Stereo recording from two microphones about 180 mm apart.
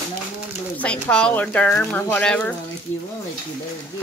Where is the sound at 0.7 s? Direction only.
5° left (ahead or behind).